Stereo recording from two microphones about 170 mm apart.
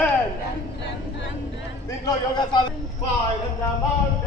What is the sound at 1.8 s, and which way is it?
Speech, 25° left (ahead or behind).